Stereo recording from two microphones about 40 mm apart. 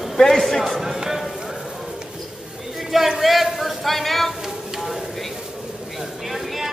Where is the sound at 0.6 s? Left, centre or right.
Centre.